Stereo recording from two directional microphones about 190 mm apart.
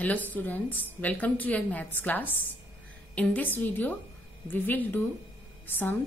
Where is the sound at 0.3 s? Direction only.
10° left (ahead or behind).